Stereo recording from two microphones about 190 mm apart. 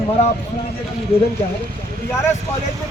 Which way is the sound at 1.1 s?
30° left (ahead or behind).